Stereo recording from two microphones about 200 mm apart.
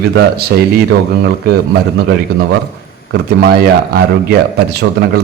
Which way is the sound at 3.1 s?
50° right (ahead or behind).